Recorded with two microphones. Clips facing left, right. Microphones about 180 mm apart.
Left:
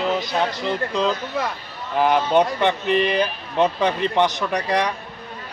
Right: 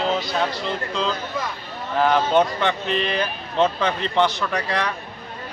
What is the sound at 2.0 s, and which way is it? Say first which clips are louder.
Speech: left 1 dB; 15° left (ahead or behind).